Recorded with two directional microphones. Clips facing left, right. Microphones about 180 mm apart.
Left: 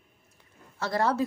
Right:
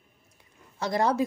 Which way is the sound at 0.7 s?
15° right (ahead or behind).